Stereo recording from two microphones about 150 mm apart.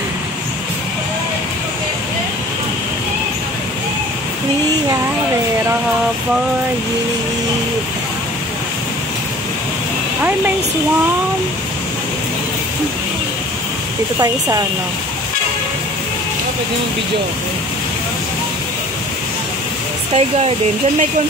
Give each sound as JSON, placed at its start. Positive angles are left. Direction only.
{"t": 20.2, "sound": "speech", "side_deg": -45}